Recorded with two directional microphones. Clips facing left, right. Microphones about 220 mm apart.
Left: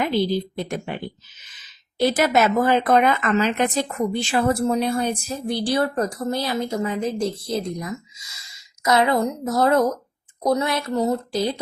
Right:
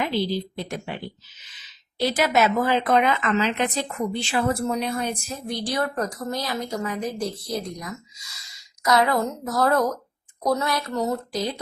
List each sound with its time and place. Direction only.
0.0 s a woman's voice: 50° left (ahead or behind)
2.0 s a woman's voice: 50° left (ahead or behind)
4.7 s speech: 30° left (ahead or behind)